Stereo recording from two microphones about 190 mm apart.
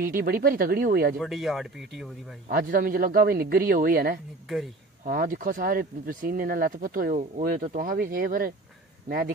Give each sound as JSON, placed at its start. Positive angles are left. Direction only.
{"t": 0.0, "sound": "speech", "side_deg": -50}
{"t": 1.2, "sound": "speech", "side_deg": 0}
{"t": 2.5, "sound": "speech", "side_deg": -45}